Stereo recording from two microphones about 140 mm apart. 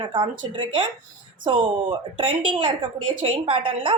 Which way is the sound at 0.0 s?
35° right (ahead or behind).